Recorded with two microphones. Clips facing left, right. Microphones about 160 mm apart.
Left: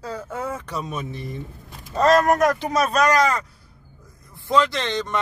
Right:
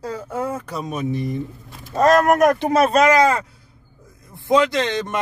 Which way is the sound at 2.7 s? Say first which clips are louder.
Right 4 dB; 25° right (ahead or behind).